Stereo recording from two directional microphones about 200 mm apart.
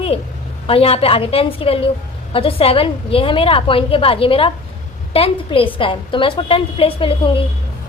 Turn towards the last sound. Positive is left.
turn(degrees=25)  # may be behind; listen again after turning